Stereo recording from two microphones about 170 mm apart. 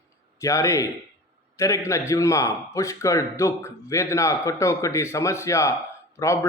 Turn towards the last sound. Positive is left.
turn(degrees=15)  # may be behind; listen again after turning